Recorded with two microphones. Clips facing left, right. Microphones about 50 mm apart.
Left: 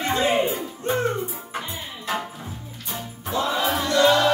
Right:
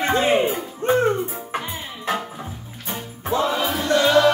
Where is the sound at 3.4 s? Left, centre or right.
Centre.